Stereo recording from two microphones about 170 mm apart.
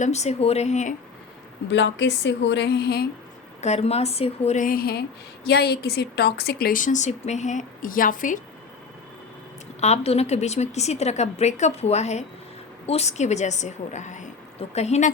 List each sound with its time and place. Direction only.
0.0 s a woman's voice: 40° left (ahead or behind)
1.7 s a woman's voice: 90° left; by 3.1 s 70° left (ahead or behind)
3.6 s a woman's voice: 40° left (ahead or behind)
9.8 s a woman's voice: 40° left (ahead or behind)